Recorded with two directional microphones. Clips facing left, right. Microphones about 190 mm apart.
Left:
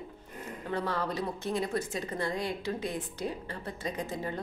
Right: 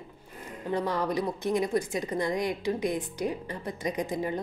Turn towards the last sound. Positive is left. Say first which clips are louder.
# right 5 dB
turn(degrees=-15)  # may be behind; listen again after turning